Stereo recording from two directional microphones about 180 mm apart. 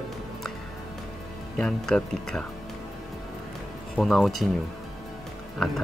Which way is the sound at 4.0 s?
Centre (ahead or behind).